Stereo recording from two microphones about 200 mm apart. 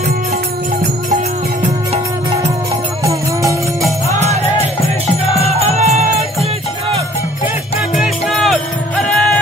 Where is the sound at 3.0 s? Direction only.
15° right (ahead or behind).